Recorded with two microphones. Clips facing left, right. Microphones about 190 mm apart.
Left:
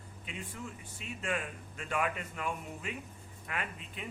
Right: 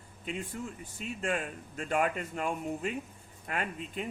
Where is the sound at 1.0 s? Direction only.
40° right (ahead or behind).